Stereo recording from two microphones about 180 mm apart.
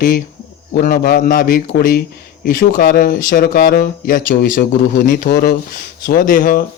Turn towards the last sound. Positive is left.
turn(degrees=50)  # may be behind; listen again after turning